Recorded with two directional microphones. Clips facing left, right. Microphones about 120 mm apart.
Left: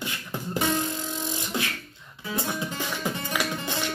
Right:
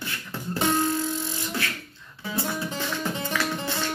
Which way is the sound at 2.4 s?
20° left (ahead or behind).